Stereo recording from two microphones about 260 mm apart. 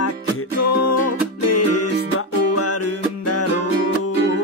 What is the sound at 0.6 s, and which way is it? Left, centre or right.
Music, left.